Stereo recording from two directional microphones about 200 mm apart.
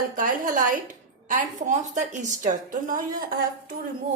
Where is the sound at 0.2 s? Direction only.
40° right (ahead or behind).